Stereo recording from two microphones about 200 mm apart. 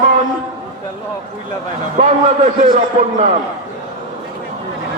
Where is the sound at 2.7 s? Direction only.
35° right (ahead or behind).